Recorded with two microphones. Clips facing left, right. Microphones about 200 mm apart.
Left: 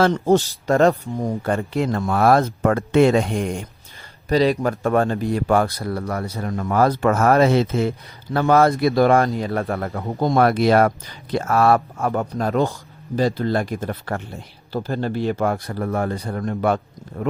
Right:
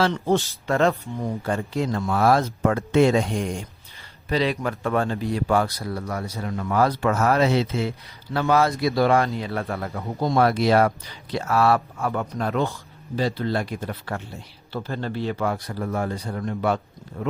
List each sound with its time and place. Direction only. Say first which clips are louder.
0.0 s speech: left 5 dB; 40° left (ahead or behind)
1.2 s speech: left 3 dB; 55° left (ahead or behind)
4.3 s a man's voice: left 6 dB; 40° left (ahead or behind)